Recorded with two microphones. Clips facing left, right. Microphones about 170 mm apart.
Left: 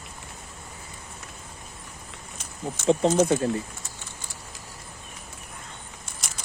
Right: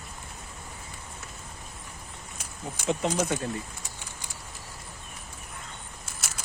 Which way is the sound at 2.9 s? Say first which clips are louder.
Left 7 dB; 30° left (ahead or behind).